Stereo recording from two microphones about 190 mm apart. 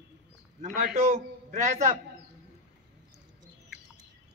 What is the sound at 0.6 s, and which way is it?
A man's voice, 40° right (ahead or behind).